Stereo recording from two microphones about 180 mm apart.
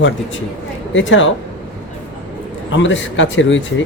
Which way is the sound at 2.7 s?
90° left.